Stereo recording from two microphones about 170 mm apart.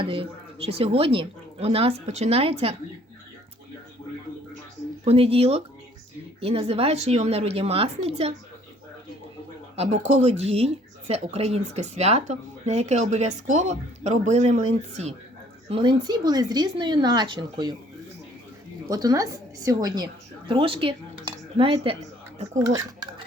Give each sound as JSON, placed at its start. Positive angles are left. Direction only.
{"t": 0.0, "sound": "speech", "side_deg": -30}
{"t": 5.0, "sound": "speech", "side_deg": -35}
{"t": 9.7, "sound": "speech", "side_deg": -40}
{"t": 15.7, "sound": "speech", "side_deg": -25}
{"t": 18.9, "sound": "speech", "side_deg": -20}
{"t": 22.5, "sound": "speech", "side_deg": -15}